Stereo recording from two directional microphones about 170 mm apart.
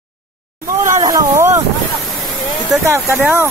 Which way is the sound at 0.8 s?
20° right (ahead or behind).